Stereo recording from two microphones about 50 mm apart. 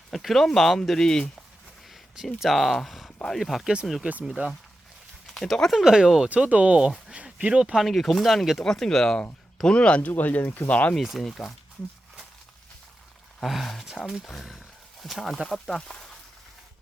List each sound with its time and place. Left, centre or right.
0.1 s speech: centre
1.9 s speech: centre
4.0 s speech: right
5.2 s a sound: centre
5.7 s speech: centre
6.2 s speech: right
7.1 s a sound: right
7.8 s speech: centre
9.6 s speech: left
10.1 s speech: left
10.9 s speech: centre
13.4 s speech: centre